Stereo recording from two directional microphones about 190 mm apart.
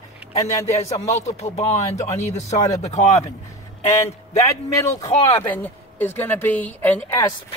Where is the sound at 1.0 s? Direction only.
35° left (ahead or behind).